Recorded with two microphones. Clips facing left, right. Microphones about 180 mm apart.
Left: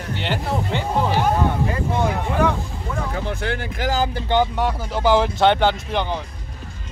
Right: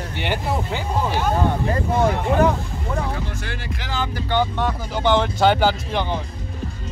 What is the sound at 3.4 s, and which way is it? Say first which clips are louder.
Speech: left 7 dB; 55° left (ahead or behind).